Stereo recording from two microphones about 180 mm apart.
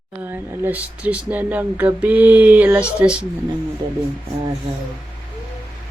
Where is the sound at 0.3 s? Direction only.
10° right (ahead or behind).